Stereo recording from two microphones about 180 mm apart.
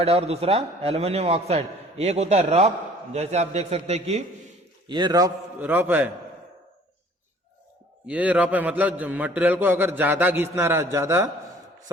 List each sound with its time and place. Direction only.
0.0 s a man's voice: 35° right (ahead or behind)
4.9 s a man's voice: 25° right (ahead or behind)
5.5 s a man's voice: 10° right (ahead or behind)
8.0 s a man's voice: 10° right (ahead or behind)